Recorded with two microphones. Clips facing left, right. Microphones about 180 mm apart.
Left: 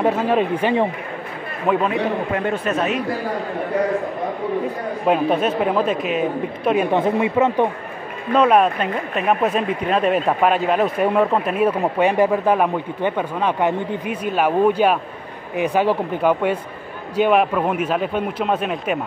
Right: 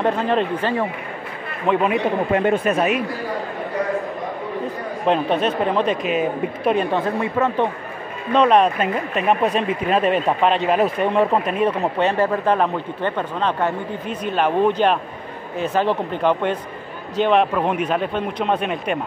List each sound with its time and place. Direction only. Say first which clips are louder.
0.0 s speech: left 1 dB; 10° left (ahead or behind)
1.7 s a man's voice: even; 5° left (ahead or behind)
2.4 s speech: right 3 dB; 10° right (ahead or behind)
5.0 s speech: left 1 dB; 5° left (ahead or behind)
6.9 s speech: left 3 dB; 15° left (ahead or behind)
8.4 s a man's voice: even; 5° left (ahead or behind)